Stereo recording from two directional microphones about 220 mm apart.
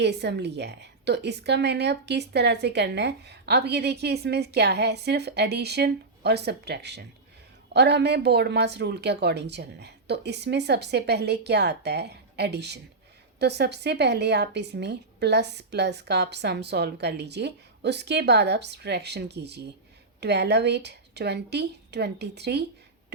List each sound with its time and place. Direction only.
0.0 s a woman's voice: 50° right (ahead or behind)